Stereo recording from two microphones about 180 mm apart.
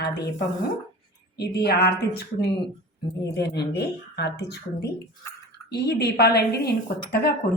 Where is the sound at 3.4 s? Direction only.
65° left (ahead or behind).